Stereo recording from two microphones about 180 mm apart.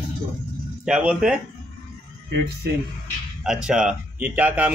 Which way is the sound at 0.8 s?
5° right (ahead or behind).